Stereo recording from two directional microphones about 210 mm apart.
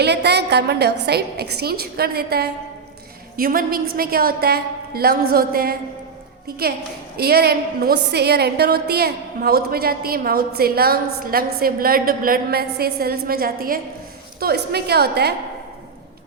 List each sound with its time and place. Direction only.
0.0 s a woman's voice: 50° right (ahead or behind)
7.2 s a woman's voice: 50° right (ahead or behind)